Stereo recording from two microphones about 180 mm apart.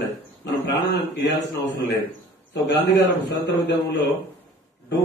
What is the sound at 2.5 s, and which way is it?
A man's voice, 70° left (ahead or behind).